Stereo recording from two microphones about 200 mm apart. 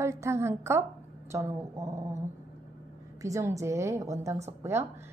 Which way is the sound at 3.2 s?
15° right (ahead or behind).